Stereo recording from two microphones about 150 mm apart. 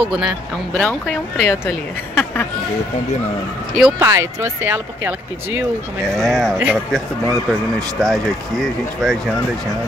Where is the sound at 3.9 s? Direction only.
20° right (ahead or behind).